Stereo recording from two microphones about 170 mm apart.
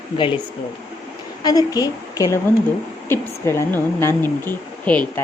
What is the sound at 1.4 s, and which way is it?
A woman's voice, 20° left (ahead or behind).